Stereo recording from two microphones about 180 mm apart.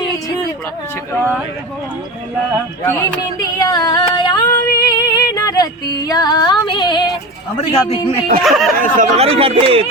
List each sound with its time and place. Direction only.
1.1 s speech: 10° left (ahead or behind)
3.6 s female singing: 20° left (ahead or behind)
7.7 s a man's voice: 35° left (ahead or behind)
8.4 s speech: centre (ahead or behind)
8.8 s speech: 40° right (ahead or behind)